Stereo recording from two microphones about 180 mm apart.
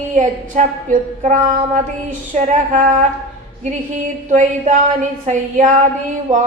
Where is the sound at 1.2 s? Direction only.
40° right (ahead or behind).